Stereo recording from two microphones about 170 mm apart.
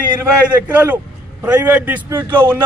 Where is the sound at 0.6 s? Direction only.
10° right (ahead or behind).